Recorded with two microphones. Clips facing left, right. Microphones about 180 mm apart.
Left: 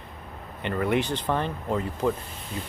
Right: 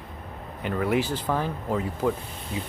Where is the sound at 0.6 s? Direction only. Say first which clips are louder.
Even; 5° right (ahead or behind).